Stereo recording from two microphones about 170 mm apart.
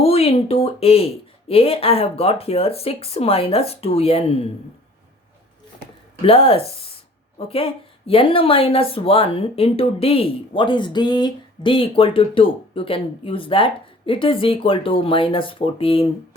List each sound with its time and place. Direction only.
0.0 s a woman's voice: 35° left (ahead or behind)
6.2 s a woman's voice: 35° left (ahead or behind)